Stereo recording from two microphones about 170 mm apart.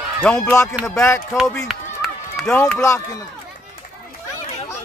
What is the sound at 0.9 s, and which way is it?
Speech, 15° left (ahead or behind).